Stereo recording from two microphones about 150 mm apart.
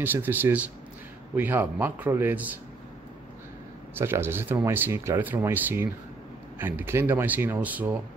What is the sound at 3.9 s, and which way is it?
Speech, 15° right (ahead or behind).